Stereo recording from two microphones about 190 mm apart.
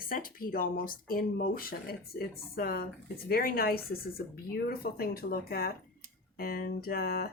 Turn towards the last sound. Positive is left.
turn(degrees=50)  # may be behind; listen again after turning